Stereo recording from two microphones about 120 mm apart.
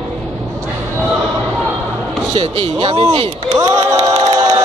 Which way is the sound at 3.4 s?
30° right (ahead or behind).